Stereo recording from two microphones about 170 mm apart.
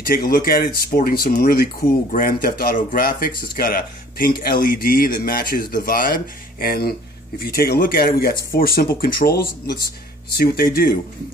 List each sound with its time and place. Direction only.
0.0 s speech: 60° left (ahead or behind)